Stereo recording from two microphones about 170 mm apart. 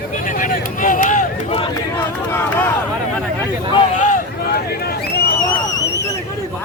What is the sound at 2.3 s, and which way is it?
Speech, 10° left (ahead or behind).